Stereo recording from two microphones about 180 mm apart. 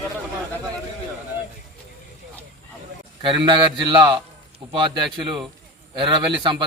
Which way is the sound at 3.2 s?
25° right (ahead or behind).